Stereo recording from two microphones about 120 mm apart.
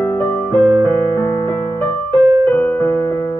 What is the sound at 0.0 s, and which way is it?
Music, 15° left (ahead or behind).